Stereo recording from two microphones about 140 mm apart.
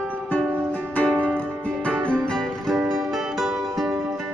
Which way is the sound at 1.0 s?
10° left (ahead or behind).